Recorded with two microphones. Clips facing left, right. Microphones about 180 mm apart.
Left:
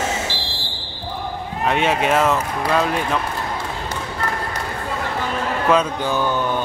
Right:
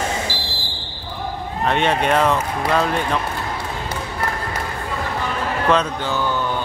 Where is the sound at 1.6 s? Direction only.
5° left (ahead or behind).